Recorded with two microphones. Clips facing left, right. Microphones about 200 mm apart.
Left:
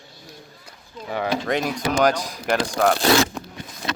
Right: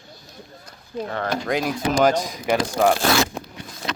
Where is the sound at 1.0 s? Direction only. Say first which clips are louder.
Left 2 dB; 5° left (ahead or behind).